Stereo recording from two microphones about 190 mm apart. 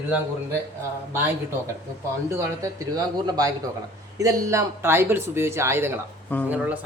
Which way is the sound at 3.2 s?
20° right (ahead or behind).